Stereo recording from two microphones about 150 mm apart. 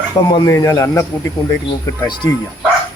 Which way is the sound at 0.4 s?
20° left (ahead or behind).